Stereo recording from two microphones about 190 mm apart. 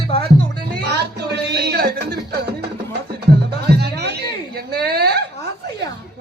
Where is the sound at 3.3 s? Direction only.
55° right (ahead or behind).